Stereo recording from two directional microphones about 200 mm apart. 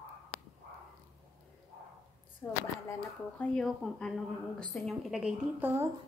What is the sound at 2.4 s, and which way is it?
A woman's voice, 10° left (ahead or behind).